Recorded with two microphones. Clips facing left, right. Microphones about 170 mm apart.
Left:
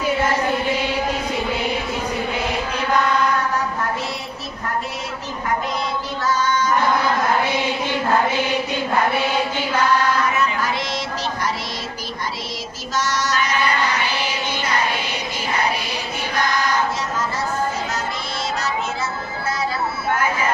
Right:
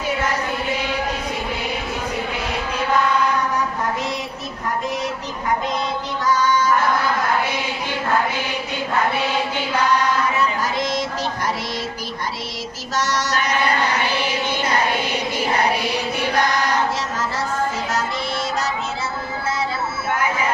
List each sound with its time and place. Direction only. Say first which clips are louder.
10.3 s child singing: even; 40° right (ahead or behind)
13.0 s female singing: even; 65° right (ahead or behind)